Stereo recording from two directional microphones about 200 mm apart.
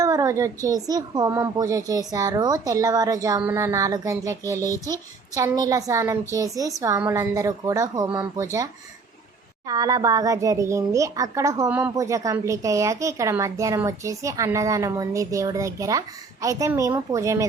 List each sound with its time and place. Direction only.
0.0 s a child's voice: 20° right (ahead or behind)